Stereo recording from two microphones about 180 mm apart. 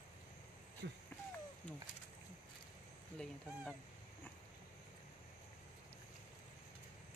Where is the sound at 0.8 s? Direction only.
75° right (ahead or behind).